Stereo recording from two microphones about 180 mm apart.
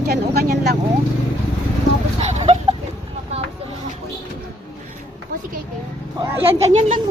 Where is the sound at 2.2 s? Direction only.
35° right (ahead or behind).